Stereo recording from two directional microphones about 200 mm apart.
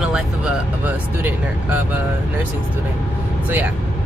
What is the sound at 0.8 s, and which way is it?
Speech, 10° right (ahead or behind).